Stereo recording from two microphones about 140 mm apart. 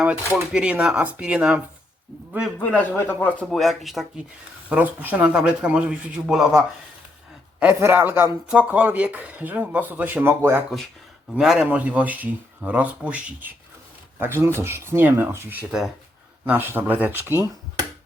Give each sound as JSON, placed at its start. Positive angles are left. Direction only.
{"t": 0.3, "sound": "speech", "side_deg": -10}
{"t": 2.6, "sound": "a man's voice", "side_deg": 10}
{"t": 4.7, "sound": "speech", "side_deg": -10}
{"t": 7.6, "sound": "speech", "side_deg": -15}
{"t": 11.3, "sound": "speech", "side_deg": -5}